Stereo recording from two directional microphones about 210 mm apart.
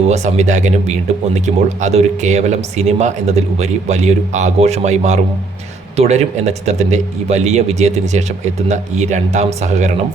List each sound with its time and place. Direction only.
0.1 s speech: 35° right (ahead or behind)